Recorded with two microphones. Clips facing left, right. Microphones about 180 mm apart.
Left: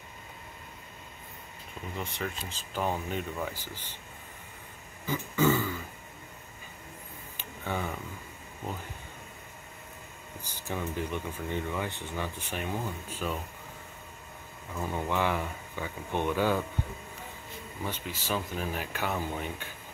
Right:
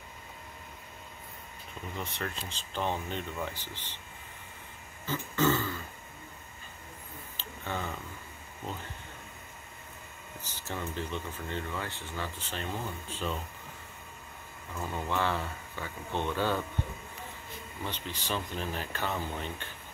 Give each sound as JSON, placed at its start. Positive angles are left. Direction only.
{"t": 2.0, "sound": "speech", "side_deg": 0}
{"t": 5.0, "sound": "a sound", "side_deg": 10}
{"t": 7.3, "sound": "a sound", "side_deg": 10}
{"t": 10.4, "sound": "speech", "side_deg": 10}
{"t": 14.8, "sound": "speech", "side_deg": 15}
{"t": 17.8, "sound": "speech", "side_deg": 10}